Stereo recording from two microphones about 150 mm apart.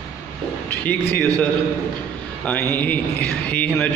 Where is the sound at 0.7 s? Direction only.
10° left (ahead or behind).